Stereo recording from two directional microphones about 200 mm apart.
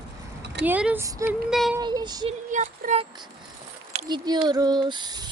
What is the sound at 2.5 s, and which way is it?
Speech, 40° right (ahead or behind).